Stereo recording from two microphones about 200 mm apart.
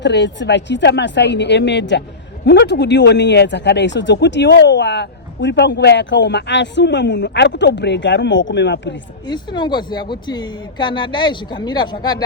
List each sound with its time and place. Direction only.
0.0 s speech: 60° left (ahead or behind)
9.2 s speech: 20° left (ahead or behind)